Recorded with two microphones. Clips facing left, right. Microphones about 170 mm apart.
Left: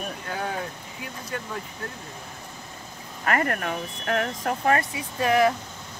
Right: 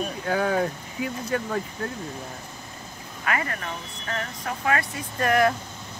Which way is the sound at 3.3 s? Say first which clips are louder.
Left 4 dB; 55° left (ahead or behind).